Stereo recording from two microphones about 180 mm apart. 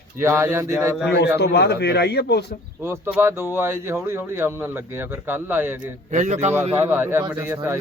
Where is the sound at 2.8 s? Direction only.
10° right (ahead or behind).